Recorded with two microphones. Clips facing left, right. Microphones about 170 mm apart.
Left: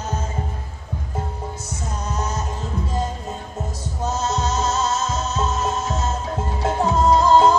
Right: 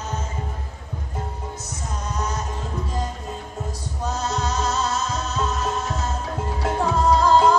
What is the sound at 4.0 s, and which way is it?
Music, 25° left (ahead or behind).